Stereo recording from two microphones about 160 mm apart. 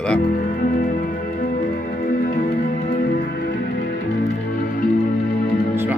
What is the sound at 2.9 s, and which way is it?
Music, 65° left (ahead or behind).